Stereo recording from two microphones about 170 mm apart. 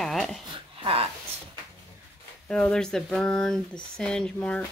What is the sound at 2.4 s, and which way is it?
Speech, 5° left (ahead or behind).